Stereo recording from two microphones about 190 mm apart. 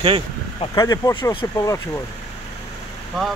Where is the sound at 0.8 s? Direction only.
20° left (ahead or behind).